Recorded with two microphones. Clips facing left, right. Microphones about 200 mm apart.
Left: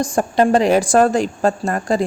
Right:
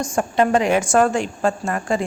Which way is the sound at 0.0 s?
35° left (ahead or behind).